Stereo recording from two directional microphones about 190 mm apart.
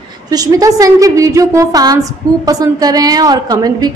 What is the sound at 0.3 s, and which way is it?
A woman's voice, 20° right (ahead or behind).